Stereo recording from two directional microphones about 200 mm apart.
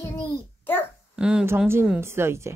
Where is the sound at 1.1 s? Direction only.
5° right (ahead or behind).